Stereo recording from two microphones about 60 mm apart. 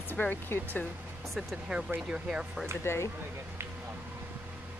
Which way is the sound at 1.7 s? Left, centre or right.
Centre.